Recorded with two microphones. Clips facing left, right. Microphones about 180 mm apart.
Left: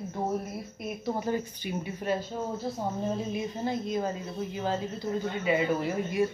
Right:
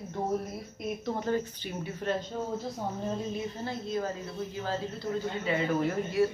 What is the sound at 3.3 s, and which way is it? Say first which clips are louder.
Speech: left 4 dB; 15° left (ahead or behind).